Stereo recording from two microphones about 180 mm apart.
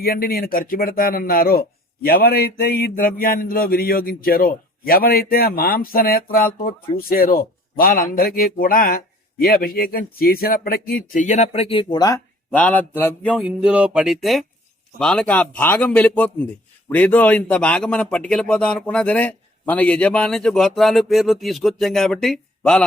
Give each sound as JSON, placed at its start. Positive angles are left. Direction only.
{"t": 0.0, "sound": "speech", "side_deg": 55}
{"t": 11.1, "sound": "speech", "side_deg": 45}
{"t": 12.5, "sound": "a man's voice", "side_deg": 10}
{"t": 13.4, "sound": "a man's voice", "side_deg": -5}